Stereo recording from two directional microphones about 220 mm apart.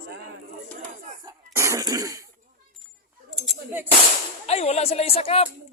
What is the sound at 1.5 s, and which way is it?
Cough, 15° right (ahead or behind).